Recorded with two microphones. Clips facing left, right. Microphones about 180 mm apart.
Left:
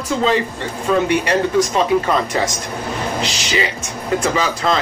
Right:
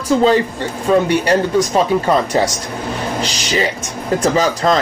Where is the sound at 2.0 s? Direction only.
35° right (ahead or behind).